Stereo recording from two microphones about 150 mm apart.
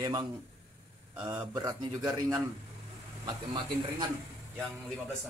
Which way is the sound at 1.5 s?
25° right (ahead or behind).